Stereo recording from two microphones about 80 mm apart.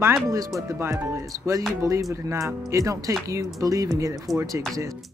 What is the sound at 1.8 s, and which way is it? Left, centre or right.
Speech, right.